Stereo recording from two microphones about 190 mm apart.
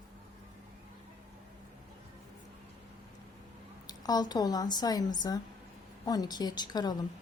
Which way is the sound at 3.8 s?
20° left (ahead or behind).